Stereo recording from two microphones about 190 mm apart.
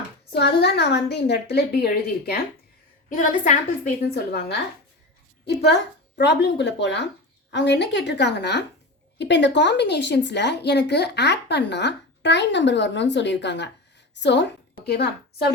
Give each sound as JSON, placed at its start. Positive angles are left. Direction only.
{"t": 0.3, "sound": "speech", "side_deg": 60}
{"t": 3.1, "sound": "a woman's voice", "side_deg": 40}
{"t": 4.0, "sound": "speech", "side_deg": 60}
{"t": 6.1, "sound": "speech", "side_deg": 65}